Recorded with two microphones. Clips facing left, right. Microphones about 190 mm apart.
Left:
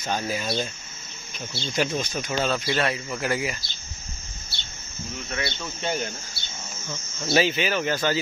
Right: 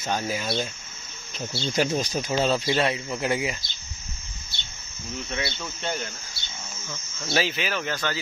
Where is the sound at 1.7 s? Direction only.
35° right (ahead or behind).